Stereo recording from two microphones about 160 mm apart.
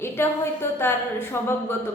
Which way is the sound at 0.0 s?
15° left (ahead or behind).